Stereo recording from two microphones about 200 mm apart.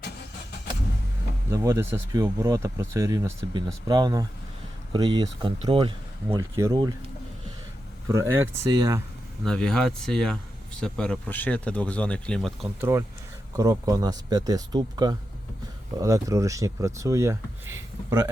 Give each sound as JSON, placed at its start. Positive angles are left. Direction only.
{"t": 1.5, "sound": "speech", "side_deg": -15}
{"t": 6.2, "sound": "speech", "side_deg": -15}
{"t": 8.0, "sound": "speech", "side_deg": -15}
{"t": 9.4, "sound": "speech", "side_deg": 5}
{"t": 12.6, "sound": "speech", "side_deg": -15}